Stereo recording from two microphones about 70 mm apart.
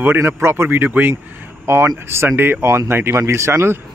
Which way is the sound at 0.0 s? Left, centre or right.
Right.